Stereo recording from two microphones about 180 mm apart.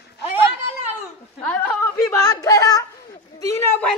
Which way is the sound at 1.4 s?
10° left (ahead or behind).